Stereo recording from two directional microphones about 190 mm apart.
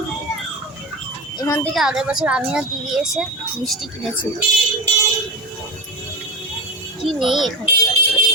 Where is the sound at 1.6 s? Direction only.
Centre (ahead or behind).